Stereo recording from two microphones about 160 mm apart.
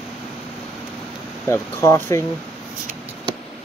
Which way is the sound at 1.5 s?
15° left (ahead or behind).